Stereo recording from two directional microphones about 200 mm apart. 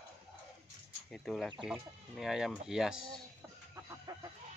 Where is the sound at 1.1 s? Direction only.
Centre (ahead or behind).